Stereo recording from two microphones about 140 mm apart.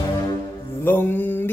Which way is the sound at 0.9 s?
15° left (ahead or behind).